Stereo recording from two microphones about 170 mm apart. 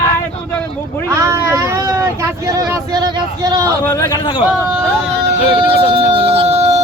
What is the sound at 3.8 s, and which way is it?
Speech, 20° left (ahead or behind).